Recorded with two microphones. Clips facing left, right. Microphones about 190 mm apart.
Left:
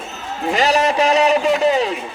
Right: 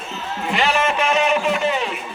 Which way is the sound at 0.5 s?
40° left (ahead or behind).